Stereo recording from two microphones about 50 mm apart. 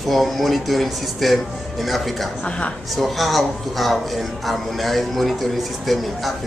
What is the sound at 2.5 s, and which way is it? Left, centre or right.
Speech, left.